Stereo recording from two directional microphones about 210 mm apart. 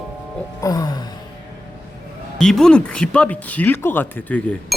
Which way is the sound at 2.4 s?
Centre (ahead or behind).